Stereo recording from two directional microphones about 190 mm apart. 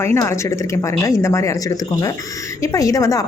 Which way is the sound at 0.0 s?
15° left (ahead or behind).